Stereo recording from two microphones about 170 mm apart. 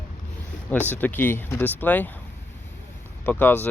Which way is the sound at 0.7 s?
10° left (ahead or behind).